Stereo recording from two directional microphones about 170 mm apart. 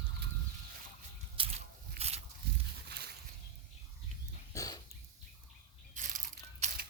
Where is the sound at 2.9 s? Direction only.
80° right.